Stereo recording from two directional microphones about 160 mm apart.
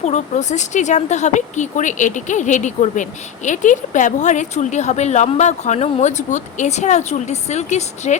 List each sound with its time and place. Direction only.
0.0 s speech: 45° left (ahead or behind)